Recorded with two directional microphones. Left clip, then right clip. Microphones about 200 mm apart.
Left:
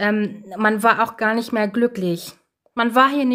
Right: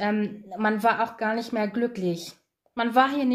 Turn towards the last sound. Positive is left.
turn(degrees=30)  # may be behind; listen again after turning